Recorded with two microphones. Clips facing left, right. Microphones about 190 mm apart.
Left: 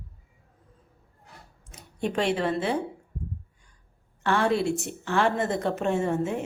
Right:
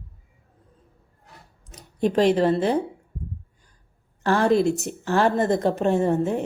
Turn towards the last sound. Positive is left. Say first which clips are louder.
# right 5 dB
turn(degrees=-35)  # may be behind; listen again after turning